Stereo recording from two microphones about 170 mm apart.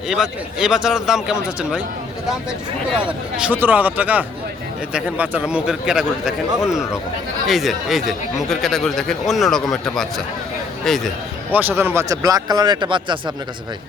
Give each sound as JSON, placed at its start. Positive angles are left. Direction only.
{"t": 0.1, "sound": "speech", "side_deg": 0}
{"t": 3.1, "sound": "speech", "side_deg": -5}
{"t": 11.8, "sound": "a man's voice", "side_deg": -15}